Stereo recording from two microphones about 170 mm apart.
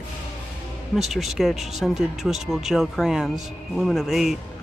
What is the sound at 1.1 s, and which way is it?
Speech, centre (ahead or behind).